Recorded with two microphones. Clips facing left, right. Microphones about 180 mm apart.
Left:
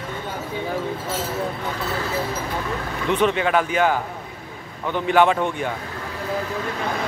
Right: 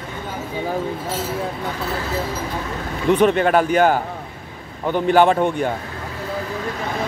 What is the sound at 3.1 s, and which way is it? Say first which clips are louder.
A man's voice: right 5 dB; 45° right (ahead or behind).